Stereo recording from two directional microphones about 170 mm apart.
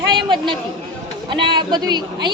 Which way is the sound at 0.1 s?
25° right (ahead or behind).